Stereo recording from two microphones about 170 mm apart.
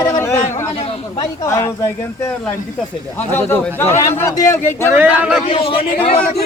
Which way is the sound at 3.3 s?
10° left (ahead or behind).